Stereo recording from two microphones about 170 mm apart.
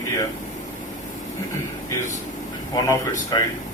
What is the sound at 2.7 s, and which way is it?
Speech, 25° left (ahead or behind).